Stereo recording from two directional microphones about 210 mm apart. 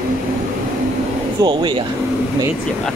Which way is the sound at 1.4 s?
20° right (ahead or behind).